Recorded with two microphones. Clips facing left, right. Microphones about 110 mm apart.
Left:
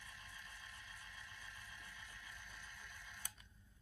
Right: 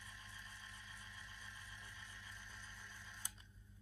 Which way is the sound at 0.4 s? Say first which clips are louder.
Even; 20° right (ahead or behind).